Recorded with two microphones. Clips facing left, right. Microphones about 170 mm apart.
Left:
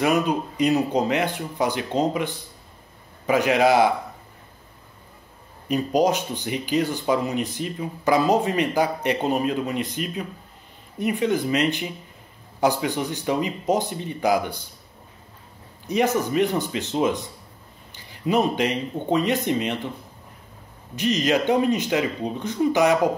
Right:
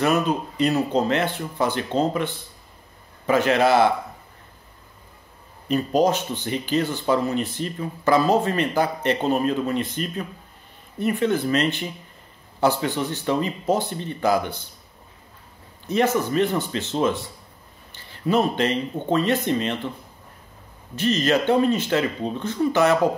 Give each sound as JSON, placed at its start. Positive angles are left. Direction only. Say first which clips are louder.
{"t": 0.0, "sound": "speech", "louder": "even", "side_deg": 15}
{"t": 5.7, "sound": "speech", "louder": "right 1 dB", "side_deg": 10}
{"t": 15.9, "sound": "speech", "louder": "right 1 dB", "side_deg": 15}
{"t": 20.9, "sound": "speech", "louder": "right 1 dB", "side_deg": 15}